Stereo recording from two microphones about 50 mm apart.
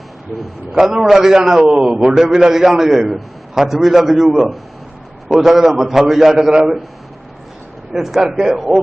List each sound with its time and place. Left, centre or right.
0.7 s a man's voice: centre
7.9 s a man's voice: centre